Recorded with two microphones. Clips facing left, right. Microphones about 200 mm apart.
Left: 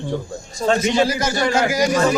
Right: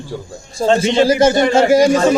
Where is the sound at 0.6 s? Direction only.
30° right (ahead or behind).